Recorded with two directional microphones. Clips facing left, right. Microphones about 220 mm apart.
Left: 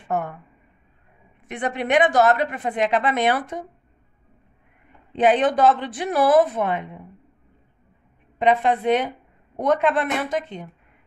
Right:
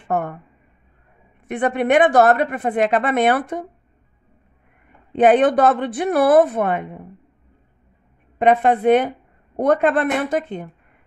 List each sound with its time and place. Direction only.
0.1 s a woman's voice: 55° right (ahead or behind)
1.5 s a woman's voice: 55° right (ahead or behind)
5.1 s a woman's voice: 55° right (ahead or behind)
8.4 s a woman's voice: 55° right (ahead or behind)